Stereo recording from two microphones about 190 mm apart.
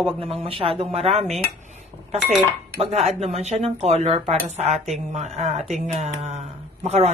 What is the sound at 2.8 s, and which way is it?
Speech, 30° right (ahead or behind).